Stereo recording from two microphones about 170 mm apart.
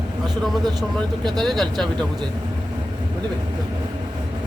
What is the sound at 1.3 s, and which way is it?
Speech, centre (ahead or behind).